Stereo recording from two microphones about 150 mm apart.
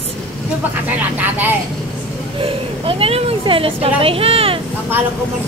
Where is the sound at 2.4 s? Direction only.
40° right (ahead or behind).